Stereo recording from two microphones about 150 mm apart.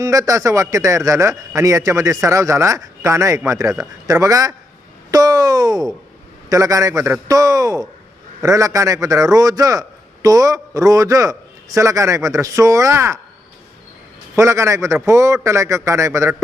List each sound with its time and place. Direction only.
0.0 s a man's voice: 20° right (ahead or behind)
14.3 s a man's voice: 20° right (ahead or behind)